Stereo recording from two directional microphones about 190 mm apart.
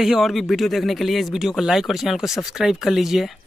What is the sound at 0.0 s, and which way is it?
Speech, centre (ahead or behind).